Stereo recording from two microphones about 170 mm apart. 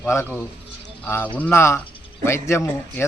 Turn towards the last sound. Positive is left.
turn(degrees=15)  # may be behind; listen again after turning